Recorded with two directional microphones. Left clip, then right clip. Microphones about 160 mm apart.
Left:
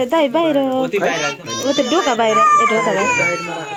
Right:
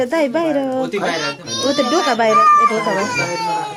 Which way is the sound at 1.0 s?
70° right (ahead or behind).